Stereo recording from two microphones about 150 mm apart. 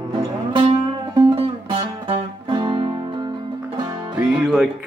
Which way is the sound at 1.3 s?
35° right (ahead or behind).